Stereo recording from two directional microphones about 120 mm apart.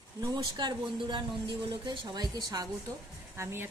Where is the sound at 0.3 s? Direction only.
35° right (ahead or behind).